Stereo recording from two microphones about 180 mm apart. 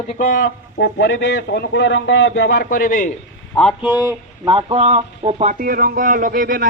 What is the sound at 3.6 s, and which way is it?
Speech, centre (ahead or behind).